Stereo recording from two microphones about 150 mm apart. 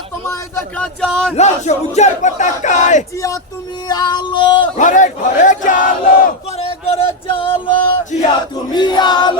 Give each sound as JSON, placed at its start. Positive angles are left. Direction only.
{"t": 0.5, "sound": "speech", "side_deg": 5}
{"t": 1.4, "sound": "a sound", "side_deg": 50}
{"t": 3.8, "sound": "music", "side_deg": 30}
{"t": 4.8, "sound": "battle cry", "side_deg": 55}
{"t": 6.6, "sound": "music", "side_deg": 40}
{"t": 8.7, "sound": "choir", "side_deg": 30}